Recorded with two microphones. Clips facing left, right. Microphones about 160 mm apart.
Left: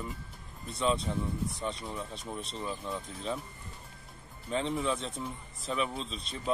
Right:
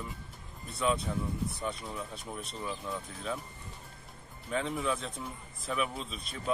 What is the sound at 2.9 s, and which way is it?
Speech, 30° left (ahead or behind).